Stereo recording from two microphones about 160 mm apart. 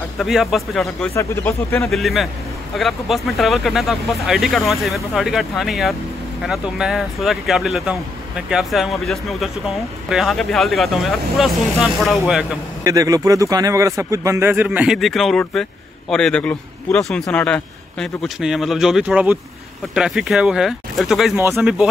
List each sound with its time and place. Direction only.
0.2 s speech: centre (ahead or behind)
1.1 s speech: 15° left (ahead or behind)
1.9 s speech: centre (ahead or behind)
12.8 s speech: 20° right (ahead or behind); by 21.3 s centre (ahead or behind)
21.4 s speech: 15° right (ahead or behind)